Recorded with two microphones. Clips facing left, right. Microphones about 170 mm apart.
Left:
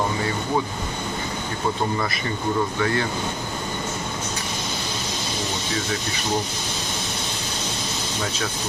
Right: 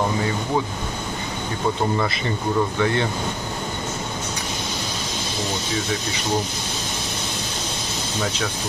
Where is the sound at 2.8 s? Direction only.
25° right (ahead or behind).